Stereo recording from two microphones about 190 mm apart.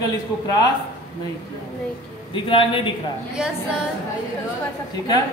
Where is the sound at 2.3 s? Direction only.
25° left (ahead or behind).